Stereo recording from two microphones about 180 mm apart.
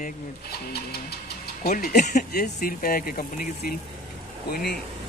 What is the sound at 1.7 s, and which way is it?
Speech, 50° left (ahead or behind).